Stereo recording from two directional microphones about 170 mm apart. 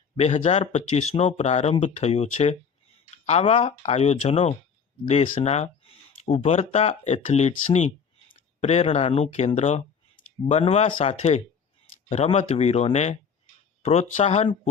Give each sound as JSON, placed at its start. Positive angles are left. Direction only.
{"t": 0.2, "sound": "speech", "side_deg": 35}